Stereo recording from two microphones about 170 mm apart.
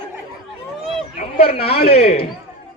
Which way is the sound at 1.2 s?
35° left (ahead or behind).